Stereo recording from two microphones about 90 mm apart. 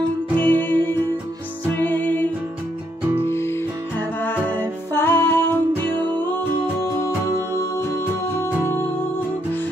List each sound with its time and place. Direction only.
0.4 s music: 20° left (ahead or behind)
3.2 s music: 30° left (ahead or behind)